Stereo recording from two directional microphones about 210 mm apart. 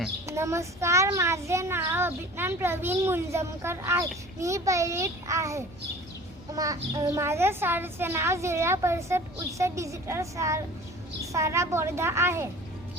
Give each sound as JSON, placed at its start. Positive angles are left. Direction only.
{"t": 0.3, "sound": "a child's voice", "side_deg": -15}